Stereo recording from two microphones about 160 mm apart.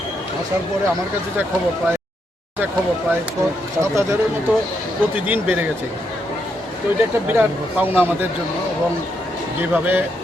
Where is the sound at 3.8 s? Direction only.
20° right (ahead or behind).